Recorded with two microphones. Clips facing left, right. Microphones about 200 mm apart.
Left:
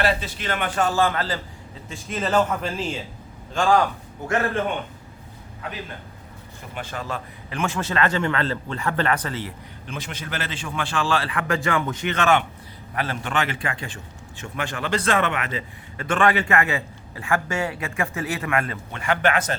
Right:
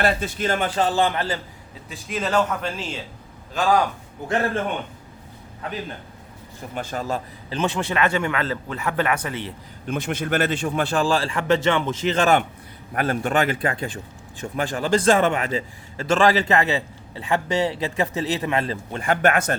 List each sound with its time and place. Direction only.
0.0 s a man's voice: 50° right (ahead or behind)
0.6 s a man's voice: 30° right (ahead or behind)
0.9 s a man's voice: 20° right (ahead or behind)
1.9 s a man's voice: centre (ahead or behind)
6.7 s a man's voice: 40° right (ahead or behind)
7.5 s a man's voice: 20° right (ahead or behind)
9.8 s a man's voice: 55° right (ahead or behind); by 18.8 s 25° right (ahead or behind)
18.9 s a man's voice: 40° right (ahead or behind)